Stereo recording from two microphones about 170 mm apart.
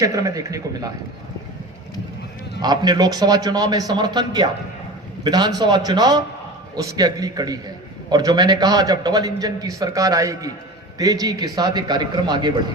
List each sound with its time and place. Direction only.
0.0 s a man's voice: 20° right (ahead or behind)
2.6 s a man's voice: 25° right (ahead or behind)